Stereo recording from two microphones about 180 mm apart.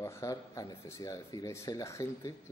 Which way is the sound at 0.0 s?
15° left (ahead or behind).